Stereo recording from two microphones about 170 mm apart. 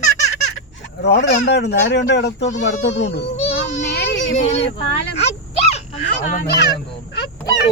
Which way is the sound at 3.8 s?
80° left.